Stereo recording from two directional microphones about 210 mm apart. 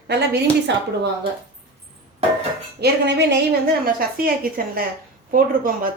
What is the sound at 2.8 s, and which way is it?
A woman's voice, 55° right (ahead or behind).